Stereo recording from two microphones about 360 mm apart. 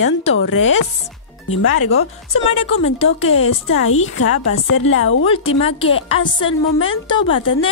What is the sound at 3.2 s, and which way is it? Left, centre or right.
Speech, left.